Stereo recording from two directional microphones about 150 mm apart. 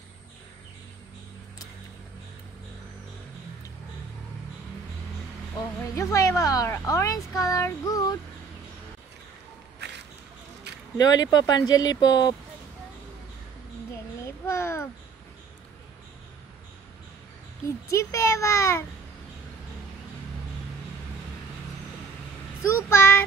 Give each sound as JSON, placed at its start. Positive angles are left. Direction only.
{"t": 5.9, "sound": "speech", "side_deg": 20}
{"t": 11.0, "sound": "speech", "side_deg": 25}
{"t": 14.2, "sound": "a sound", "side_deg": 20}
{"t": 17.9, "sound": "speech", "side_deg": 20}
{"t": 22.6, "sound": "child singing", "side_deg": 20}